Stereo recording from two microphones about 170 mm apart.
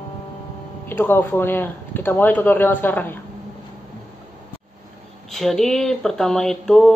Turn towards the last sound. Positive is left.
turn(degrees=0)  # may be behind; listen again after turning